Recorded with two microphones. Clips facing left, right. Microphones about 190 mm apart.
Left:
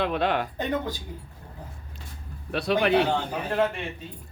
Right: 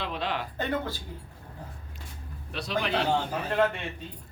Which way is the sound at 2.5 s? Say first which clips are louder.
Left 7 dB; 60° left (ahead or behind).